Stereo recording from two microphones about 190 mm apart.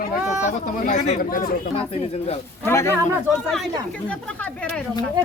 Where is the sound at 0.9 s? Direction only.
45° left (ahead or behind).